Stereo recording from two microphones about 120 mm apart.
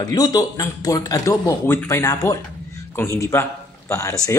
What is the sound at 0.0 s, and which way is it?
Speech, 30° left (ahead or behind).